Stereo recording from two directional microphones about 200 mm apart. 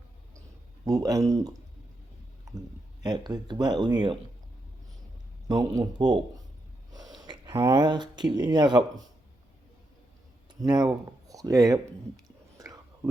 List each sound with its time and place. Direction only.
0.9 s speech: 15° right (ahead or behind)
5.5 s speech: 20° right (ahead or behind)
10.6 s speech: 20° right (ahead or behind)